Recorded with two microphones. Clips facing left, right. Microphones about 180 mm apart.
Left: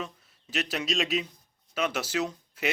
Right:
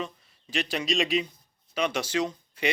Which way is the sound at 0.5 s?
5° left (ahead or behind).